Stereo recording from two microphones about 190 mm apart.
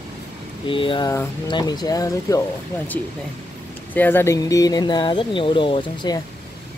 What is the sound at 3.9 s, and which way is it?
Speech, 10° left (ahead or behind).